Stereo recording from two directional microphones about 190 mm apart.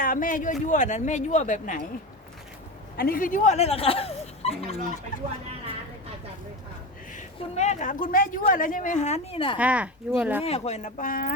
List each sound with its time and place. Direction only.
0.0 s a man's voice: 45° left (ahead or behind)
3.0 s speech: 50° left (ahead or behind)
7.1 s speech: 40° left (ahead or behind)
9.6 s speech: 5° right (ahead or behind)
10.4 s speech: 30° left (ahead or behind)